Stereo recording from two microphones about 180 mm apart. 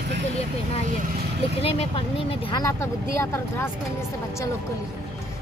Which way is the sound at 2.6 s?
15° left (ahead or behind).